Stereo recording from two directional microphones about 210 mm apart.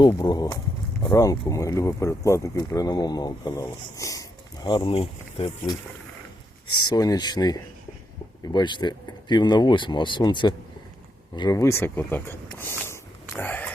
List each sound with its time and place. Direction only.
0.0 s speech: 20° left (ahead or behind)
6.8 s speech: 15° left (ahead or behind)